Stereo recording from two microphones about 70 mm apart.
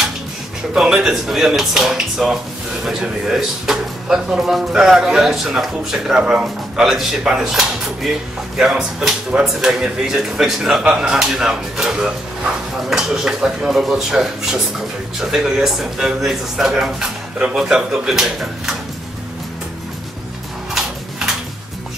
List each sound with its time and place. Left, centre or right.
0.7 s speech: centre
17.4 s speech: centre
17.6 s speech: centre